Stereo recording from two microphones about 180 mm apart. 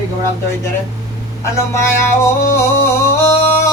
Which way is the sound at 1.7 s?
15° left (ahead or behind).